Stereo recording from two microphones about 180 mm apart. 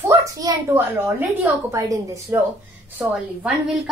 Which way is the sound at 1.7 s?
15° right (ahead or behind).